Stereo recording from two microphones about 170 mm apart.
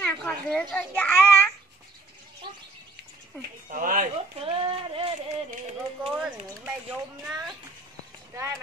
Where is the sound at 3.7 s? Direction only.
55° right (ahead or behind).